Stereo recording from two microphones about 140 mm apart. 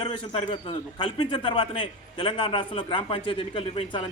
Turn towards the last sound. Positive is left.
turn(degrees=35)  # may be behind; listen again after turning